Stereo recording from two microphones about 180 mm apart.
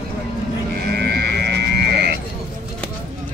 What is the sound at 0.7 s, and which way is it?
Sheep, 65° right (ahead or behind).